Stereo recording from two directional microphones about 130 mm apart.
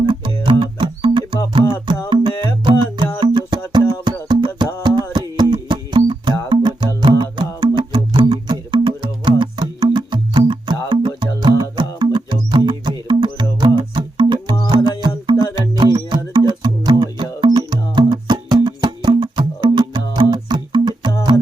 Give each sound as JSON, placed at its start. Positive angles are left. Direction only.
{"t": 0.0, "sound": "music", "side_deg": -40}